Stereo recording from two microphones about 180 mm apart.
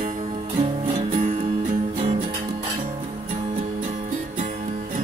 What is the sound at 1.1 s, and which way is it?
Music, 40° right (ahead or behind).